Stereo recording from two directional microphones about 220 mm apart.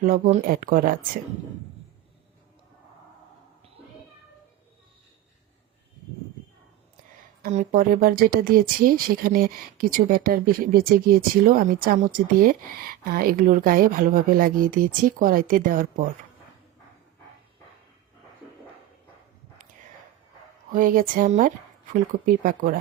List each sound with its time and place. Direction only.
0.0 s speech: 40° right (ahead or behind)
7.4 s speech: 35° right (ahead or behind)
20.7 s speech: 40° right (ahead or behind)